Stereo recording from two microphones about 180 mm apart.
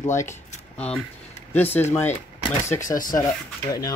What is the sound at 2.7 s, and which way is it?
Speech, 15° left (ahead or behind).